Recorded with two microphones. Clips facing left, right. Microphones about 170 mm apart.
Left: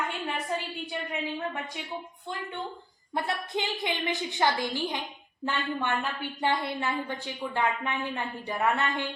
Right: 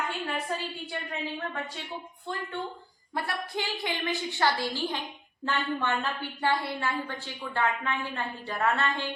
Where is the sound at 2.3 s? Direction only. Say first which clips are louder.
Right 2 dB; 15° left (ahead or behind).